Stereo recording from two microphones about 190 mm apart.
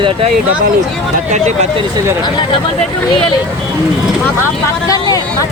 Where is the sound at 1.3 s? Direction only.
40° right (ahead or behind).